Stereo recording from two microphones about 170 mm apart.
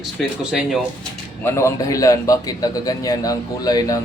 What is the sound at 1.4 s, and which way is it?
A man's voice, 15° left (ahead or behind).